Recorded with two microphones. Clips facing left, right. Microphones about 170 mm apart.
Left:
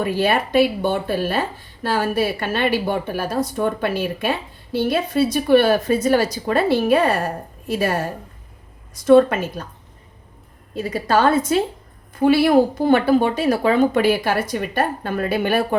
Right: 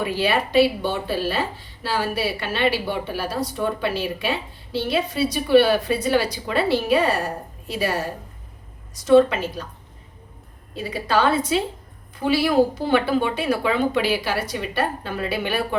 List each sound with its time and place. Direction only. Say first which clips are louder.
0.0 s speech: left 3 dB; 50° left (ahead or behind)
10.8 s speech: left 3 dB; 45° left (ahead or behind)